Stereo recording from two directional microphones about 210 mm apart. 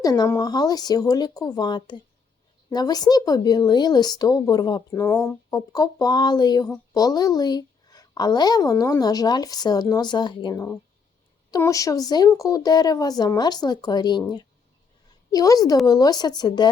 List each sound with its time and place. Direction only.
0.0 s a woman's voice: 15° left (ahead or behind)